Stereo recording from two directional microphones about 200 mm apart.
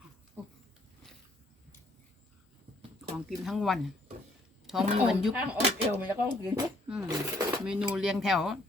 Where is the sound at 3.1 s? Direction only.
Centre (ahead or behind).